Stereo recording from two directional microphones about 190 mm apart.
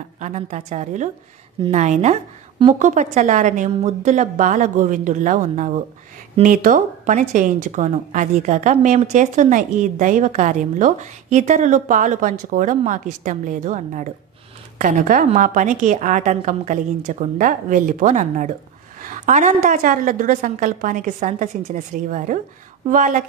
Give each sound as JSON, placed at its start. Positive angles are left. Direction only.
{"t": 0.2, "sound": "a woman's voice", "side_deg": -35}